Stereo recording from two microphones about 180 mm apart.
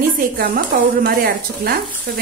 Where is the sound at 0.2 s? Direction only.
55° right (ahead or behind).